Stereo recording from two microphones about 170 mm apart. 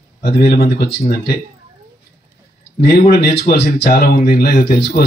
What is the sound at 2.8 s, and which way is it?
Speech, 65° left (ahead or behind).